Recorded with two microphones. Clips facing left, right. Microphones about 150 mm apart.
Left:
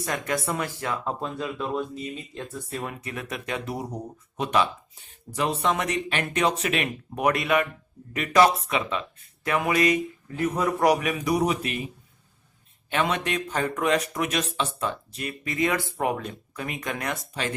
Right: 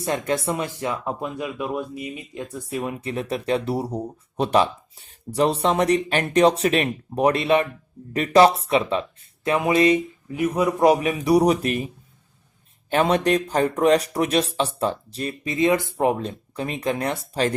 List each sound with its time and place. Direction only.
0.0 s speech: 25° right (ahead or behind)
3.0 s speech: 30° right (ahead or behind)
10.3 s speech: 15° right (ahead or behind); by 11.8 s 40° right (ahead or behind)
12.9 s speech: 35° right (ahead or behind)